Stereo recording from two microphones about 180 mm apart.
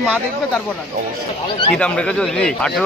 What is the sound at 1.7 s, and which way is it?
Speech, 5° left (ahead or behind).